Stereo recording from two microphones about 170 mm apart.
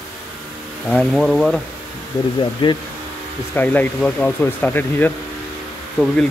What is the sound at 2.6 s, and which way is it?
Speech, 30° left (ahead or behind).